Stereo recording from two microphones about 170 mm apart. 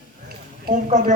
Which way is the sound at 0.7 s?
45° right (ahead or behind).